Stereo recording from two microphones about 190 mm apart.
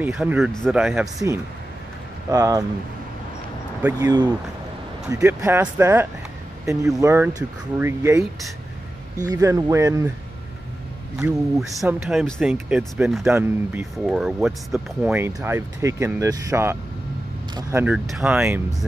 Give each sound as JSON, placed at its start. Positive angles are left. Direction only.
{"t": 0.0, "sound": "speech", "side_deg": -5}
{"t": 2.3, "sound": "speech", "side_deg": -15}
{"t": 3.8, "sound": "speech", "side_deg": -20}
{"t": 9.3, "sound": "speech", "side_deg": -15}
{"t": 11.1, "sound": "speech", "side_deg": 0}